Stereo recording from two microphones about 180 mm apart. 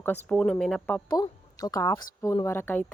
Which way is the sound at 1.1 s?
20° left (ahead or behind).